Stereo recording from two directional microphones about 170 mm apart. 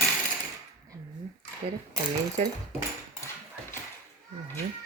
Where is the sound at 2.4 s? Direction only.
40° right (ahead or behind).